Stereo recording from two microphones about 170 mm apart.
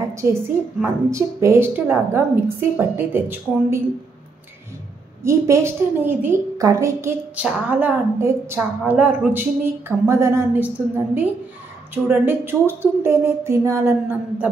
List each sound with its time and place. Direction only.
0.1 s a woman's voice: 20° right (ahead or behind)
5.2 s a woman's voice: 15° right (ahead or behind)